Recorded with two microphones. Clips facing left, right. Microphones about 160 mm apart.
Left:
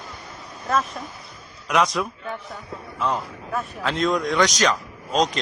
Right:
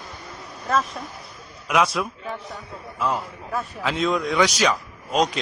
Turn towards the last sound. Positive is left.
turn(degrees=-10)  # may be behind; listen again after turning